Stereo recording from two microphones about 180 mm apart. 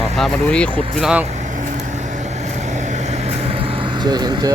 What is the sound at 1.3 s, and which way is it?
Vehicle, 40° right (ahead or behind).